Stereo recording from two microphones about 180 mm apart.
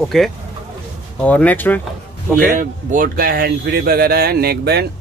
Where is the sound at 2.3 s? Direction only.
50° right (ahead or behind).